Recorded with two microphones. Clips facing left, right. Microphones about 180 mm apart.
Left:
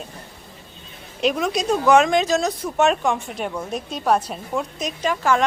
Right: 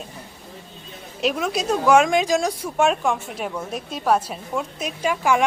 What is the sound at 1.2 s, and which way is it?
A woman's voice, centre (ahead or behind).